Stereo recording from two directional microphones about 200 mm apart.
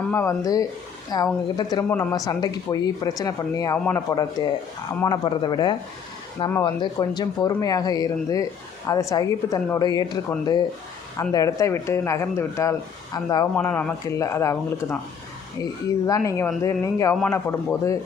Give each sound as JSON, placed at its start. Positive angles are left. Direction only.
{"t": 0.1, "sound": "speech", "side_deg": 15}
{"t": 13.6, "sound": "speech", "side_deg": 10}
{"t": 16.0, "sound": "speech", "side_deg": 15}